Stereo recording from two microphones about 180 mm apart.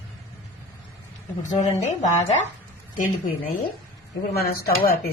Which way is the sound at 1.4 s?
40° left (ahead or behind).